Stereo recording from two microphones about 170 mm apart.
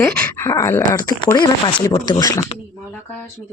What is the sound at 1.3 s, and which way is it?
Speech, 25° left (ahead or behind).